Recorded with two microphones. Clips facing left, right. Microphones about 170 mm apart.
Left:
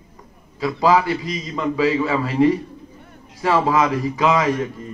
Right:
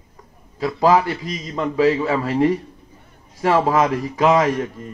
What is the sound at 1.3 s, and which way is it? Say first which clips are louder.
Speech: even; 40° right (ahead or behind).